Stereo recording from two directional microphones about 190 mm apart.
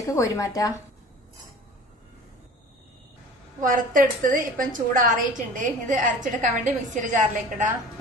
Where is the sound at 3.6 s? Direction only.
45° right (ahead or behind).